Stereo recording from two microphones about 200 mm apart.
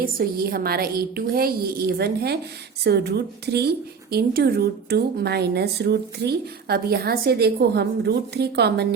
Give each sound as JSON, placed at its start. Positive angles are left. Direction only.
{"t": 0.0, "sound": "a woman's voice", "side_deg": -45}